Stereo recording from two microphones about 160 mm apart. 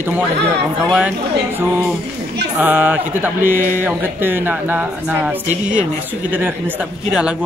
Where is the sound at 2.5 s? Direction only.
10° right (ahead or behind).